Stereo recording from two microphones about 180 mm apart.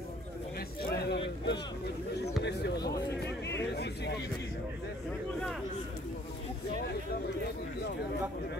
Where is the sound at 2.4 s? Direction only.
65° left (ahead or behind).